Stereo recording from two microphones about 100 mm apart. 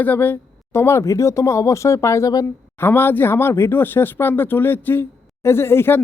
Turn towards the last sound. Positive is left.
turn(degrees=25)  # may be behind; listen again after turning